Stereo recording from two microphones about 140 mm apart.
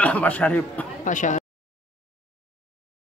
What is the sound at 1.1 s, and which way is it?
Speech, 60° left (ahead or behind).